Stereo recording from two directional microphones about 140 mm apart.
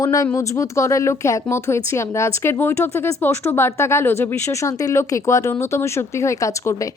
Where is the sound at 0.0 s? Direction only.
25° left (ahead or behind).